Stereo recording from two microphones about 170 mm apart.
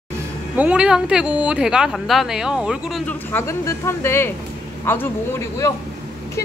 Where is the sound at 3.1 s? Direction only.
10° left (ahead or behind).